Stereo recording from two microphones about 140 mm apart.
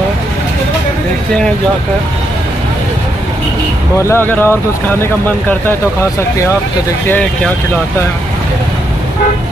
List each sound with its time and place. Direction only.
4.0 s speech: 15° left (ahead or behind)
7.1 s speech: 10° left (ahead or behind)